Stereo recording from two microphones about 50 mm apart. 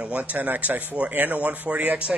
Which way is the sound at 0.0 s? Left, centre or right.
Right.